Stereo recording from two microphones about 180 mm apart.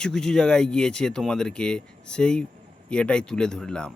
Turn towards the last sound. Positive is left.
turn(degrees=5)  # may be behind; listen again after turning